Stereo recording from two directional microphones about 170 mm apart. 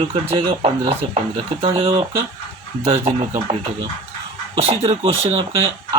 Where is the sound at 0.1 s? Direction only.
35° right (ahead or behind).